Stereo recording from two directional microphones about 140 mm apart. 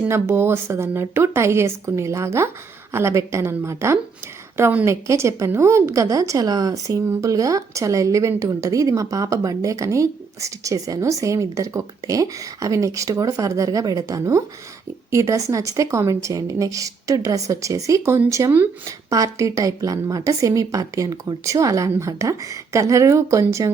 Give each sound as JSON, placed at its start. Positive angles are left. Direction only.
{"t": 0.1, "sound": "a woman's voice", "side_deg": -20}